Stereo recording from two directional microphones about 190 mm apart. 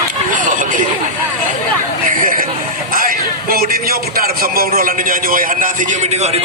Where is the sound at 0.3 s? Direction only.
45° right (ahead or behind).